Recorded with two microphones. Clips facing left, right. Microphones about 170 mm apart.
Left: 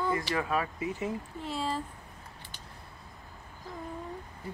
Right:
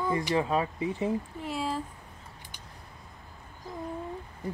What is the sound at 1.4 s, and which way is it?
Speech, 10° right (ahead or behind).